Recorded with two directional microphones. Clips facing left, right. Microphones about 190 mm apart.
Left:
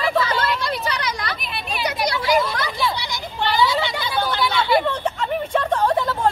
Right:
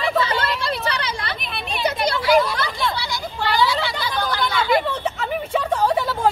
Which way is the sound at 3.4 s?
20° left (ahead or behind).